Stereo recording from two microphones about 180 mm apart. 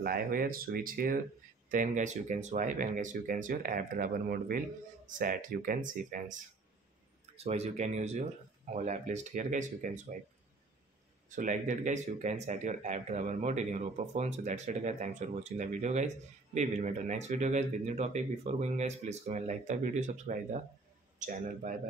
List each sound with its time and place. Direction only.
0.0 s speech: 55° right (ahead or behind)
7.3 s speech: 35° right (ahead or behind)
11.2 s speech: 45° right (ahead or behind)